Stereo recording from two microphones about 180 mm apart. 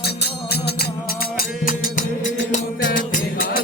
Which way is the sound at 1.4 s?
50° left (ahead or behind).